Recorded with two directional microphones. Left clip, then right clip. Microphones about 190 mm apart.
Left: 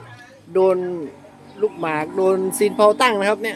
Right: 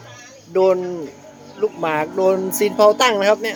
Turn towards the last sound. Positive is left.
turn(degrees=10)  # may be behind; listen again after turning